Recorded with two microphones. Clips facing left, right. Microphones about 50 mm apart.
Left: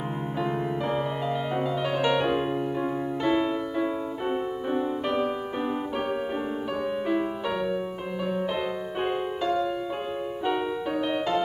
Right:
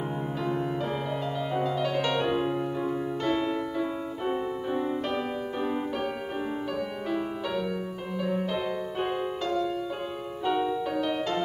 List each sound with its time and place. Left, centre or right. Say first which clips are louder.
0.4 s music: left 2 dB; left
9.0 s music: left 4 dB; centre